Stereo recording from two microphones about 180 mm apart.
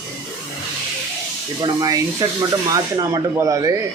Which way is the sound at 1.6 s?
20° right (ahead or behind).